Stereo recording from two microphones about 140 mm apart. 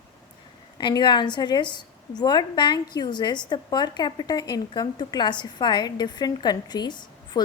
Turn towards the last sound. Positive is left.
turn(degrees=30)  # may be behind; listen again after turning